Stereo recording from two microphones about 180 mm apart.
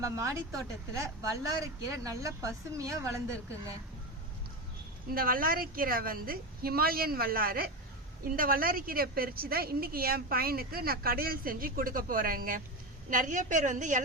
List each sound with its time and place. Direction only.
0.0 s speech: 15° right (ahead or behind)
5.0 s a woman's voice: 55° right (ahead or behind)